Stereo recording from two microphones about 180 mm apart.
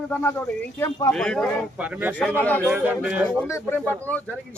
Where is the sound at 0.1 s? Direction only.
10° left (ahead or behind).